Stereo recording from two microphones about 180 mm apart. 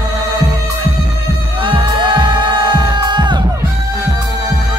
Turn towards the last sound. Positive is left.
turn(degrees=-25)  # may be behind; listen again after turning